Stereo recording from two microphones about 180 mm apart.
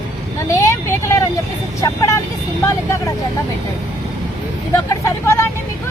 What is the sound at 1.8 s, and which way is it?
Speech, 15° left (ahead or behind).